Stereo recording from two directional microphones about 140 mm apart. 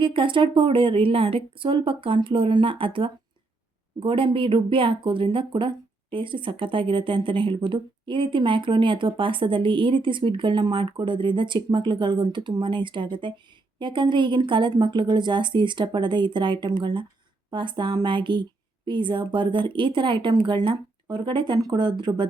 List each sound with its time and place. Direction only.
0.0 s speech: 35° right (ahead or behind)